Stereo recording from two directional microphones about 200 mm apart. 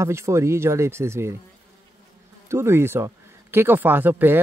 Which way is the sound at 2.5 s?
10° right (ahead or behind).